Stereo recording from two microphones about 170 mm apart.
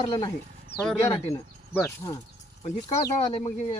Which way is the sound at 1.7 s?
15° left (ahead or behind).